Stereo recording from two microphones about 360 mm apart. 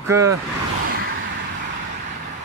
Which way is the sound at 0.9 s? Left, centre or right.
Right.